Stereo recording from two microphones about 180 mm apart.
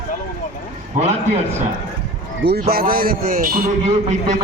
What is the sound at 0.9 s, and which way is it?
Speech, 40° right (ahead or behind).